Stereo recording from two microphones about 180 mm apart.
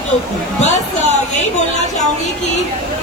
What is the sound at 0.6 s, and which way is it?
Speech, 40° left (ahead or behind).